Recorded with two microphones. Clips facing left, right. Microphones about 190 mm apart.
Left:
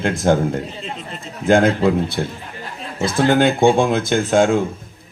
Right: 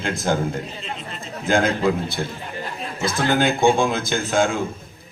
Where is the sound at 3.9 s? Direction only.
60° left (ahead or behind).